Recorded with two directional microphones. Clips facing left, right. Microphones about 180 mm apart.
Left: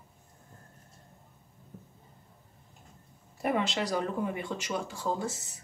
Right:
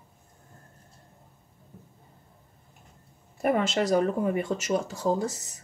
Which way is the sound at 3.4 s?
50° right (ahead or behind).